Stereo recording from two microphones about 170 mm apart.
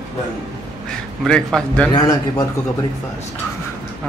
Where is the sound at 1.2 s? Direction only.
5° left (ahead or behind).